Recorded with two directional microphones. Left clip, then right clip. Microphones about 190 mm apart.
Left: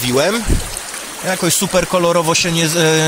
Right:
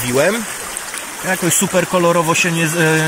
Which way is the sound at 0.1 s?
15° left (ahead or behind).